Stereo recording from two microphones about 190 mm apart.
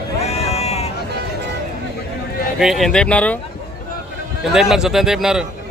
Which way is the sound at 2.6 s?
Centre (ahead or behind).